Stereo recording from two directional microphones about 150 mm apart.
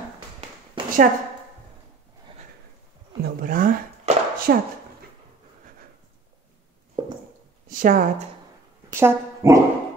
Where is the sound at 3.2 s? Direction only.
70° right (ahead or behind).